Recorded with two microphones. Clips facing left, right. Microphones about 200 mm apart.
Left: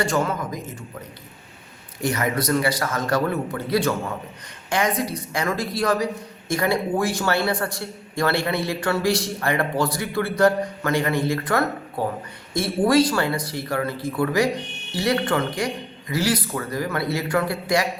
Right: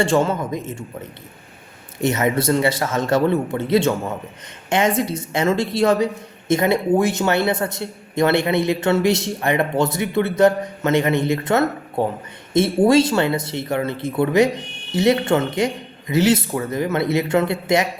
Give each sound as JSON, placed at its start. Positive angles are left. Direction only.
{"t": 0.0, "sound": "a man's voice", "side_deg": -25}
{"t": 2.0, "sound": "a man's voice", "side_deg": -25}